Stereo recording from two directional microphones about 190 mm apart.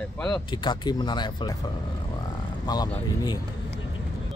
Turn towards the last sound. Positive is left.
turn(degrees=20)  # may be behind; listen again after turning